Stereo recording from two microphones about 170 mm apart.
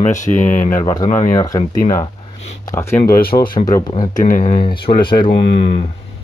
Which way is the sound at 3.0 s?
60° left (ahead or behind).